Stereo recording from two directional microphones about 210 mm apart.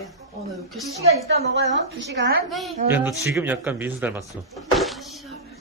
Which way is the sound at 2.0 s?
55° right (ahead or behind).